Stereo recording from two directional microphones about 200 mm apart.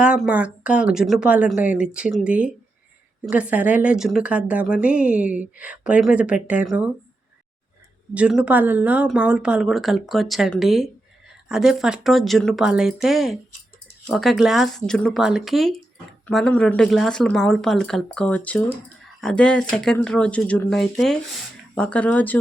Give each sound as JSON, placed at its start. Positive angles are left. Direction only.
{"t": 0.0, "sound": "a woman's voice", "side_deg": -5}
{"t": 8.1, "sound": "speech", "side_deg": -5}